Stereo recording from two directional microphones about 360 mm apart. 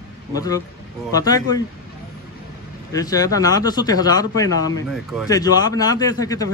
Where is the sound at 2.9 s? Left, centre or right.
Centre.